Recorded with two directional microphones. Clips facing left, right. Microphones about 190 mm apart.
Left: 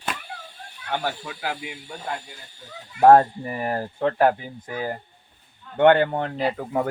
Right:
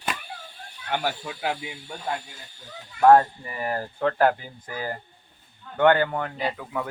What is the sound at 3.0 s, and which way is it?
Speech, 35° left (ahead or behind).